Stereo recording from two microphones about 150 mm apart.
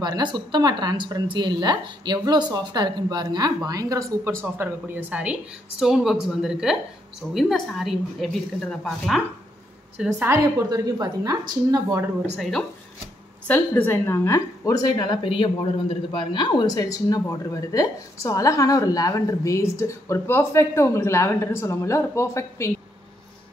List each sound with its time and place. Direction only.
0.0 s a woman's voice: 30° right (ahead or behind); by 9.2 s centre (ahead or behind)
10.1 s a woman's voice: 15° right (ahead or behind)
10.7 s speech: 25° right (ahead or behind)
12.4 s a woman's voice: centre (ahead or behind)
13.5 s a woman's voice: 10° left (ahead or behind)